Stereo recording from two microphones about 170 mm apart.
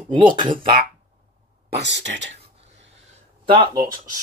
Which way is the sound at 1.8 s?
90° right.